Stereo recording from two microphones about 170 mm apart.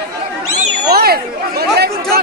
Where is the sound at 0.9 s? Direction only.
65° right (ahead or behind).